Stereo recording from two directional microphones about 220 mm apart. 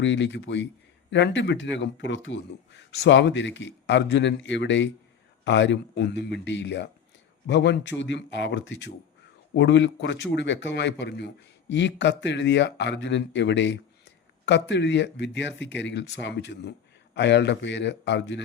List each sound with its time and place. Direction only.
0.0 s speech: 55° left (ahead or behind)